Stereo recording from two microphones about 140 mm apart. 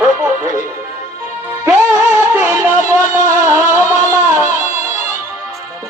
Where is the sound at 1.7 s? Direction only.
15° right (ahead or behind).